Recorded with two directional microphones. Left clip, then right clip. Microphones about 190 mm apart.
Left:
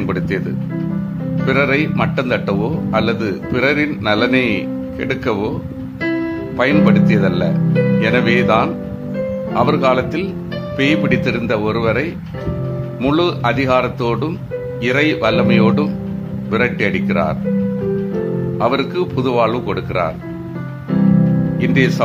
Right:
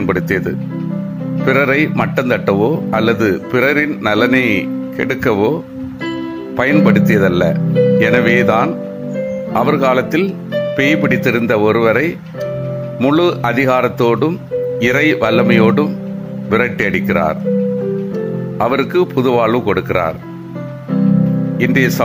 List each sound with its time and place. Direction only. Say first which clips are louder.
0.0 s speech: right 5 dB; 25° right (ahead or behind)
6.6 s speech: right 2 dB; 25° right (ahead or behind)
18.6 s speech: right 4 dB; 25° right (ahead or behind)
21.5 s speech: right 3 dB; 25° right (ahead or behind)